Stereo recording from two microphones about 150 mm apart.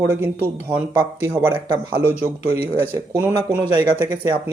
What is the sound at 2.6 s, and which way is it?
Speech, 10° right (ahead or behind).